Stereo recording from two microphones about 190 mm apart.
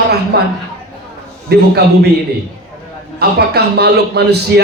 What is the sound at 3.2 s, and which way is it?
A man's voice, 60° right (ahead or behind).